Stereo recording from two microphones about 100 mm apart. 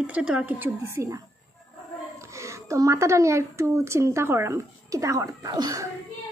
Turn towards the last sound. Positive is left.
turn(degrees=-40)  # may be behind; listen again after turning